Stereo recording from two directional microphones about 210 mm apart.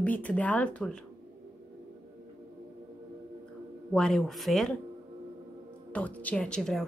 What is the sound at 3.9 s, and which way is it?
Speech, 5° left (ahead or behind).